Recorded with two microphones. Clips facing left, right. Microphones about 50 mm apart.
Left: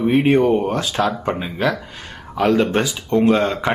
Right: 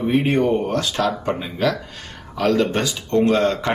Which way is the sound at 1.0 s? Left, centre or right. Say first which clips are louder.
Left 2 dB; centre.